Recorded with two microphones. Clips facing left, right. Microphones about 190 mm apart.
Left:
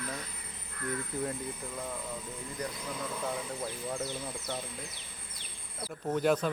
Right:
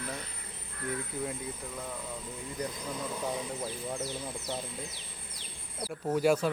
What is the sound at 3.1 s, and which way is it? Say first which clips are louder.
Speech: right 1 dB; 15° right (ahead or behind).